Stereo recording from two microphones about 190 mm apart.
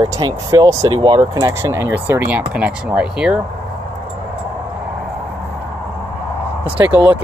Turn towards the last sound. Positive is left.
turn(degrees=-10)  # may be behind; listen again after turning